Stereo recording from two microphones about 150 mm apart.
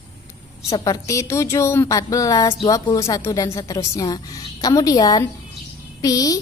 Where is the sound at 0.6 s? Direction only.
25° left (ahead or behind).